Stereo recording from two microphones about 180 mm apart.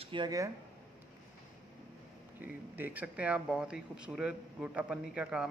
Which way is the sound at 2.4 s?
10° right (ahead or behind).